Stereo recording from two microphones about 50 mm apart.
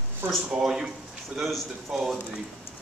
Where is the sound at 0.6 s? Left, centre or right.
Centre.